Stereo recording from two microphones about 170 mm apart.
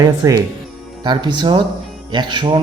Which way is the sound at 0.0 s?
20° right (ahead or behind).